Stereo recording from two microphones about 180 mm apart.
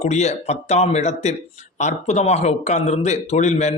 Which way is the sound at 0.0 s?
40° left (ahead or behind).